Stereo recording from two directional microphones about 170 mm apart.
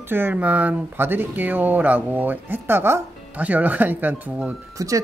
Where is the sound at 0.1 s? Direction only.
10° right (ahead or behind).